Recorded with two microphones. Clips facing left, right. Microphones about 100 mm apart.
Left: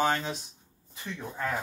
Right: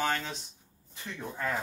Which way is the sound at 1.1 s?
5° left (ahead or behind).